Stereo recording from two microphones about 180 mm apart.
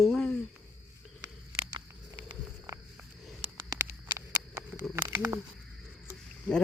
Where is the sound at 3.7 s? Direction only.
15° right (ahead or behind).